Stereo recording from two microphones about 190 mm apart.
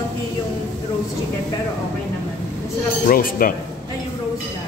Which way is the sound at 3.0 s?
50° left (ahead or behind).